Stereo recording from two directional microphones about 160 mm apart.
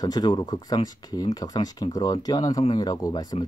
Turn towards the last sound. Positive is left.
turn(degrees=25)  # may be behind; listen again after turning